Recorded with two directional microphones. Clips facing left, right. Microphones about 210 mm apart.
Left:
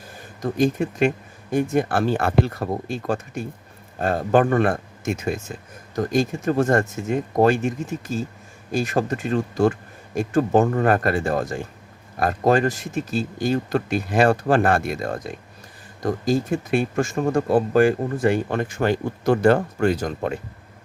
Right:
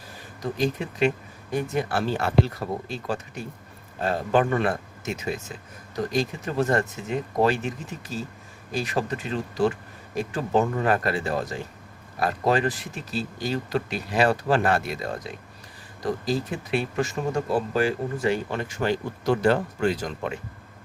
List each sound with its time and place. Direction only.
0.5 s speech: 50° left (ahead or behind)